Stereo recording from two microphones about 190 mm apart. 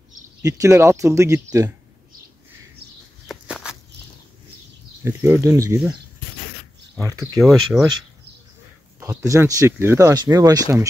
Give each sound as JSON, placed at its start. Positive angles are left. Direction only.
{"t": 0.4, "sound": "speech", "side_deg": -15}
{"t": 3.3, "sound": "a sound", "side_deg": 0}
{"t": 5.0, "sound": "speech", "side_deg": -15}
{"t": 7.4, "sound": "speech", "side_deg": -15}
{"t": 7.7, "sound": "speech", "side_deg": -5}
{"t": 9.0, "sound": "speech", "side_deg": -15}